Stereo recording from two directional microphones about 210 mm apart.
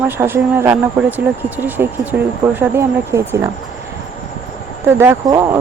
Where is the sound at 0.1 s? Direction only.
10° right (ahead or behind).